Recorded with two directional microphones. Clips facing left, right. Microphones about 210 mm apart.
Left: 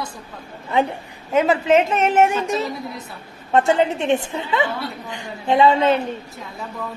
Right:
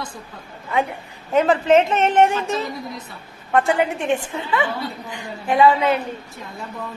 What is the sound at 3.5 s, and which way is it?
A woman's voice, 25° left (ahead or behind).